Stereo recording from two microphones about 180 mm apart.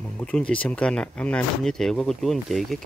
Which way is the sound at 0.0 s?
5° left (ahead or behind).